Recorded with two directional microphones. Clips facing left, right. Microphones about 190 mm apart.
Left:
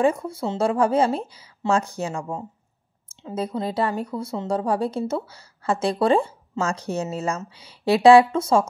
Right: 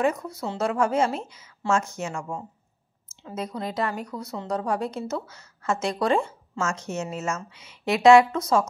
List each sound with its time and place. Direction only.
0.0 s speech: 30° left (ahead or behind)